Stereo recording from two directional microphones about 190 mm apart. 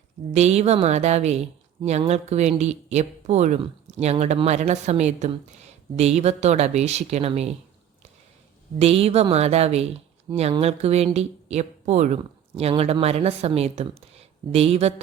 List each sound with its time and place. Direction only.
0.3 s speech: 35° right (ahead or behind)
8.8 s speech: 30° right (ahead or behind)